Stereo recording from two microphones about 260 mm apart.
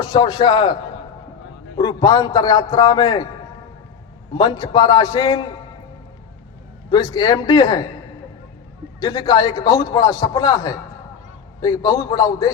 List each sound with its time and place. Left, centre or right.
0.0 s a man's voice: centre
1.8 s a man's voice: centre
4.4 s a man's voice: centre
6.9 s a man's voice: centre
9.0 s a man's voice: centre